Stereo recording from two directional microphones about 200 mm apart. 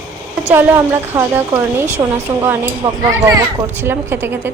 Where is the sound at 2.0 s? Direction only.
20° right (ahead or behind).